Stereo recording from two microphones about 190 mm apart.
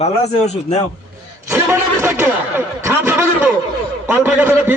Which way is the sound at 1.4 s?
15° right (ahead or behind).